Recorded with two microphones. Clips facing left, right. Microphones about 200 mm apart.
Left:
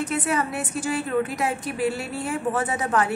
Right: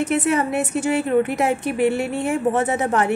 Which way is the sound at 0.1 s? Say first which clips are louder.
Right 6 dB; 25° right (ahead or behind).